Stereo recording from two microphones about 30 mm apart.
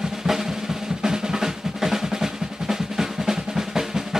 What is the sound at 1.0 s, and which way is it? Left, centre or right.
Drum, right.